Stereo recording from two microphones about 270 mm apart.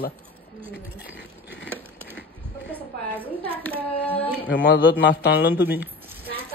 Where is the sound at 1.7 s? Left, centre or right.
Centre.